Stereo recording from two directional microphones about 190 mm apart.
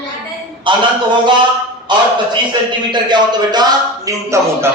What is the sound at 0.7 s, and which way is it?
Speech, 25° right (ahead or behind).